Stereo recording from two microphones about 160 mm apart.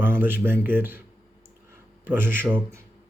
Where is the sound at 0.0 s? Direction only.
15° right (ahead or behind).